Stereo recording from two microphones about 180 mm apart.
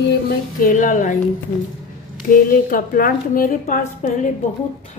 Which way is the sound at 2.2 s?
50° left (ahead or behind).